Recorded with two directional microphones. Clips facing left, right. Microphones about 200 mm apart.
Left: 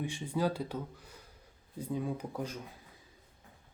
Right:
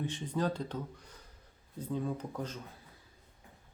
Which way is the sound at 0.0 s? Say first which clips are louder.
Left 1 dB; 10° left (ahead or behind).